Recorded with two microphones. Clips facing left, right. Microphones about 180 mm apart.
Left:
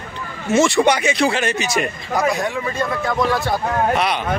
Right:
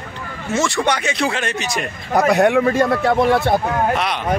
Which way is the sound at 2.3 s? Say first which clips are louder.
Right 9 dB; 65° right (ahead or behind).